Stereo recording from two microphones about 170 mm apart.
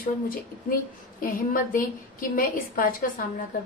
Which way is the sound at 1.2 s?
55° left (ahead or behind).